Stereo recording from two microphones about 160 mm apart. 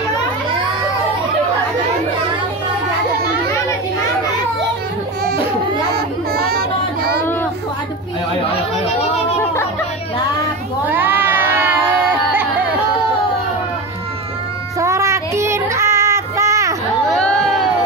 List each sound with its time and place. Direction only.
5.9 s child singing: 75° right (ahead or behind)
8.5 s chatter: 40° left (ahead or behind)
10.9 s cat: 10° right (ahead or behind)
14.8 s child singing: 20° right (ahead or behind)
17.1 s crowd: 5° left (ahead or behind)